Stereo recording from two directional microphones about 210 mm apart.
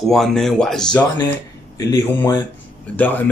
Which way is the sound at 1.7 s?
15° left (ahead or behind).